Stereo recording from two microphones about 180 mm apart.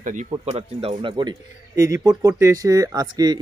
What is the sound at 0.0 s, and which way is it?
Speech, 45° right (ahead or behind).